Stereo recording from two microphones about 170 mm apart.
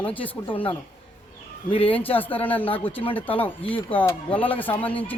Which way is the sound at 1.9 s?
10° left (ahead or behind).